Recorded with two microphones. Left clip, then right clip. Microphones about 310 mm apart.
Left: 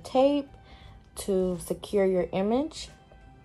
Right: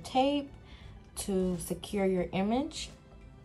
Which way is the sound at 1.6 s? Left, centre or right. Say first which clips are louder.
Left 5 dB; right.